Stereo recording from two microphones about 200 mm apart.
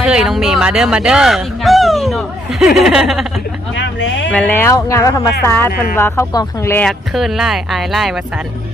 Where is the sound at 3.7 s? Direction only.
65° left (ahead or behind).